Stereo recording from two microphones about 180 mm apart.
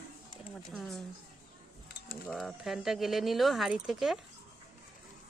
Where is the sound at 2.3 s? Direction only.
Centre (ahead or behind).